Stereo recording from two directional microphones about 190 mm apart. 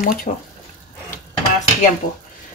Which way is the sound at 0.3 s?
35° left (ahead or behind).